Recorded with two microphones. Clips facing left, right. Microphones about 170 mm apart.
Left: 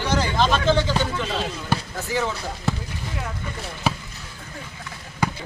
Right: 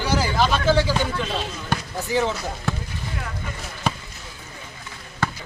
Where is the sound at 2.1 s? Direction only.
20° right (ahead or behind).